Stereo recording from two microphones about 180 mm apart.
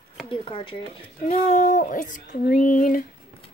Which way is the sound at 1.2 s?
45° left (ahead or behind).